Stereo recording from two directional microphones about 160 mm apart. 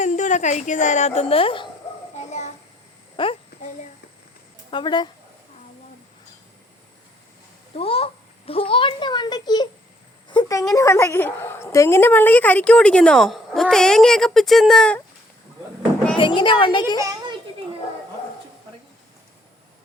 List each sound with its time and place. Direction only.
0.0 s a woman's voice: 50° left (ahead or behind); by 1.7 s 35° left (ahead or behind)
3.2 s a child's voice: 30° left (ahead or behind)
4.7 s a child's voice: 30° left (ahead or behind)
7.8 s a child's voice: 35° left (ahead or behind); by 15.0 s 5° left (ahead or behind)
16.1 s a woman's voice: 30° left (ahead or behind)